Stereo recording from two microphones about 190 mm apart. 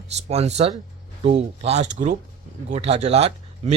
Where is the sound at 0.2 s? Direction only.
35° right (ahead or behind).